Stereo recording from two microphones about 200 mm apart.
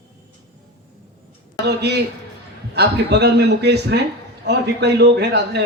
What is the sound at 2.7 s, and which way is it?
A man's voice, 55° right (ahead or behind).